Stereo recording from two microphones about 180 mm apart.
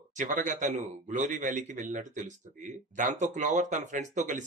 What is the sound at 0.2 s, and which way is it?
Speech, 45° right (ahead or behind).